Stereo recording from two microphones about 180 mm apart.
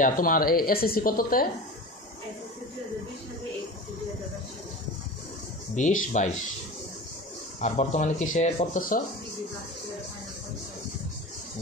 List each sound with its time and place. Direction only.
0.0 s speech: 50° left (ahead or behind)
5.8 s speech: 45° left (ahead or behind)
7.6 s speech: 40° left (ahead or behind)